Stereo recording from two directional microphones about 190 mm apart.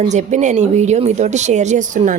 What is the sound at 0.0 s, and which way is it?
Speech, 40° right (ahead or behind).